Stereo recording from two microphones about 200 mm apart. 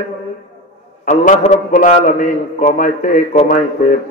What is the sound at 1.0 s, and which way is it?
A man's voice, 40° left (ahead or behind).